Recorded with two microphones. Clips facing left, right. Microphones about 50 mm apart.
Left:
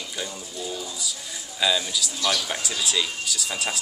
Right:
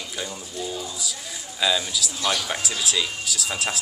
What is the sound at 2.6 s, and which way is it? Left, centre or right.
A man's voice, centre.